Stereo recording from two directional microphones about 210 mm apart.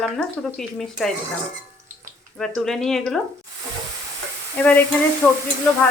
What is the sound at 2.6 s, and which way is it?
Speech, centre (ahead or behind).